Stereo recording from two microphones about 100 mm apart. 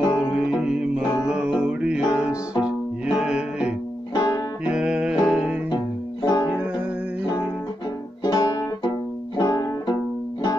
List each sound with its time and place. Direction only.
0.0 s music: 45° left (ahead or behind)
0.4 s music: 10° right (ahead or behind)
4.1 s music: 35° left (ahead or behind)
4.6 s music: 10° right (ahead or behind)
6.2 s music: 40° left (ahead or behind)
8.2 s music: 40° left (ahead or behind)